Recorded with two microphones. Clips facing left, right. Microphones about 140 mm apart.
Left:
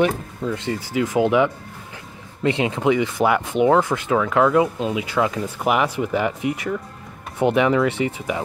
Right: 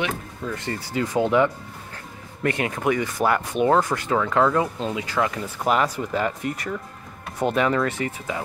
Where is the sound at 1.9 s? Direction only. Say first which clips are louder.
Even; 20° left (ahead or behind).